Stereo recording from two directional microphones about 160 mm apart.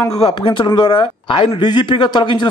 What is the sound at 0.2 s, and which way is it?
Speech, 30° left (ahead or behind).